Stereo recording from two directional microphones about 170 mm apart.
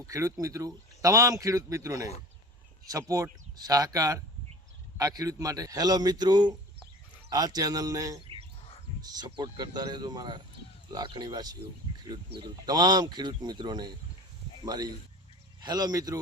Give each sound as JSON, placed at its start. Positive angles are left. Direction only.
{"t": 0.0, "sound": "speech", "side_deg": -20}
{"t": 11.9, "sound": "a sound", "side_deg": -25}
{"t": 12.4, "sound": "speech", "side_deg": -25}